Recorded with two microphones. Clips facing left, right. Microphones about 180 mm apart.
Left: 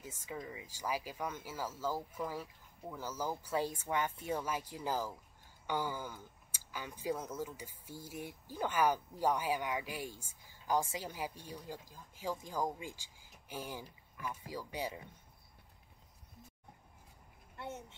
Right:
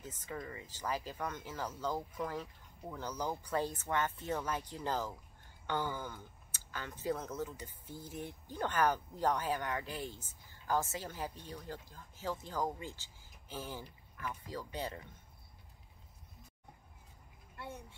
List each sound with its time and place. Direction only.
0.0 s speech: 10° left (ahead or behind)
17.6 s a child's voice: 20° left (ahead or behind)